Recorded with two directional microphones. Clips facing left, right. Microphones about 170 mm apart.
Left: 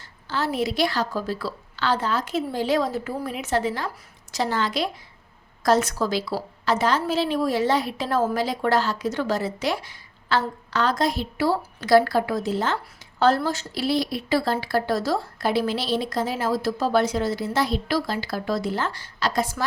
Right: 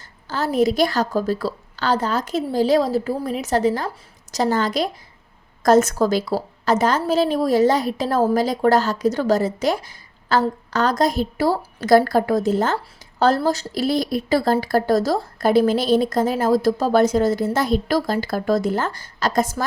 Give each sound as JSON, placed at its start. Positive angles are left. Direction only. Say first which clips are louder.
{"t": 0.3, "sound": "a woman's voice", "louder": "right 6 dB", "side_deg": -40}